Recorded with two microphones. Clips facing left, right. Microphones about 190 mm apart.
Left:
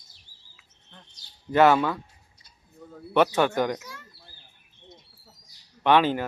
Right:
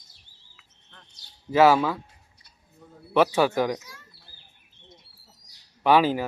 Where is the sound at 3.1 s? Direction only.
5° right (ahead or behind).